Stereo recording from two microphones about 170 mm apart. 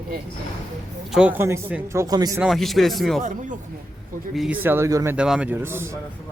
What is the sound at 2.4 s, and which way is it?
Speech, centre (ahead or behind).